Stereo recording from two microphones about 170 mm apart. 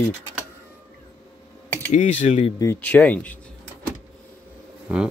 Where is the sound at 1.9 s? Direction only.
45° left (ahead or behind).